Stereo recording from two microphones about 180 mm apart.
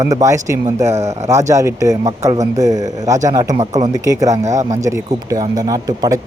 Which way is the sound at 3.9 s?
20° right (ahead or behind).